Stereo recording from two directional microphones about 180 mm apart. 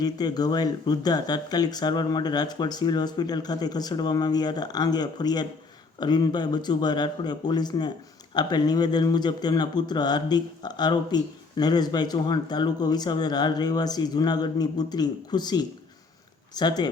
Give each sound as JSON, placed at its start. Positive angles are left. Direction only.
{"t": 0.0, "sound": "a man's voice", "side_deg": 20}